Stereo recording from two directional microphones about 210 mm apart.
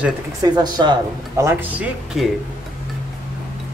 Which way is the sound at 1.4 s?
5° right (ahead or behind).